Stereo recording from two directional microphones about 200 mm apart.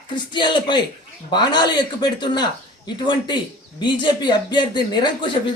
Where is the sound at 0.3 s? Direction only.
20° left (ahead or behind).